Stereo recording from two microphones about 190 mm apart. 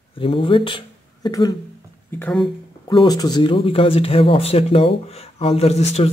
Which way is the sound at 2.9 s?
20° left (ahead or behind).